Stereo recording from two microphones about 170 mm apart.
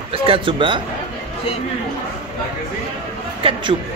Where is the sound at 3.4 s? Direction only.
30° right (ahead or behind).